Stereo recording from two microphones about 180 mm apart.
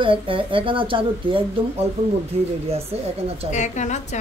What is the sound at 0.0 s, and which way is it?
Speech, 30° right (ahead or behind).